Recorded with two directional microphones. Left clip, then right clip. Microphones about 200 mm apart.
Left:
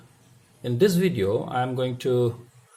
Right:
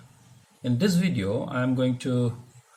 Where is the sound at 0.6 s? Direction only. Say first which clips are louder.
Left 5 dB; 40° left (ahead or behind).